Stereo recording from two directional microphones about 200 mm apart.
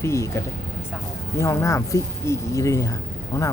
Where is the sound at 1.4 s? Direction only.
15° left (ahead or behind).